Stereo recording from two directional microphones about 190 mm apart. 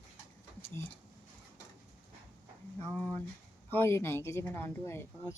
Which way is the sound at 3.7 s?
15° left (ahead or behind).